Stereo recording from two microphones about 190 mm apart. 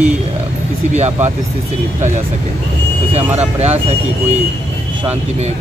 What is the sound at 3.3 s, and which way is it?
Speech, 35° right (ahead or behind).